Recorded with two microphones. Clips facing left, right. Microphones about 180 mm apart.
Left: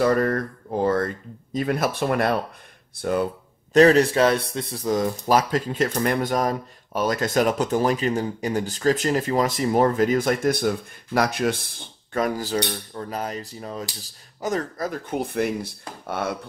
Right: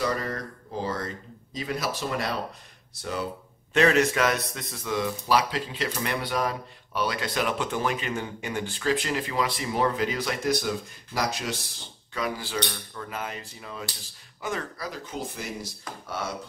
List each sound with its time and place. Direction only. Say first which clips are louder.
0.0 s speech: left 9 dB; 55° left (ahead or behind)
3.7 s speech: left 6 dB; 35° left (ahead or behind); by 16.3 s 60° left (ahead or behind)